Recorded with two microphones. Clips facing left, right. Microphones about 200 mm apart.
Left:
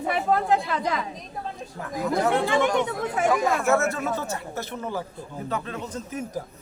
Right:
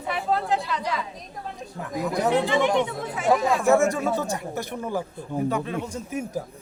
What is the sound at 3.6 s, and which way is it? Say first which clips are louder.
Speech: right 3 dB; 15° right (ahead or behind).